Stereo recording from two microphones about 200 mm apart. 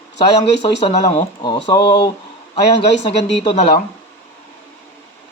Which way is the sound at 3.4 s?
30° left (ahead or behind).